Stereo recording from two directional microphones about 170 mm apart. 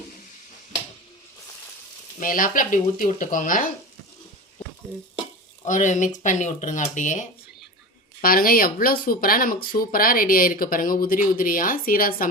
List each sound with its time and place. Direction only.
2.1 s speech: 55° left (ahead or behind)
5.6 s speech: 50° left (ahead or behind)
8.2 s speech: 60° left (ahead or behind)